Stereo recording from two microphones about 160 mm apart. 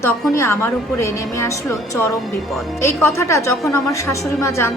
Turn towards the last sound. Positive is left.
turn(degrees=15)  # may be behind; listen again after turning